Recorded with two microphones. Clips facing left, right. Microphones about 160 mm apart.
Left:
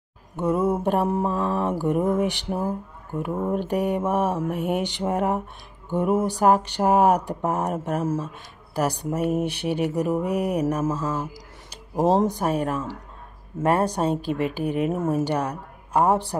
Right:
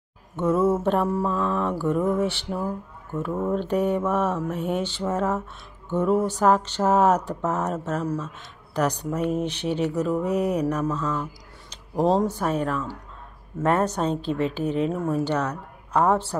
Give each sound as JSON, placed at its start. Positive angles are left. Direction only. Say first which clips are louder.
{"t": 0.5, "sound": "mantra", "louder": "right 1 dB", "side_deg": 15}
{"t": 11.9, "sound": "mantra", "louder": "left 1 dB", "side_deg": 20}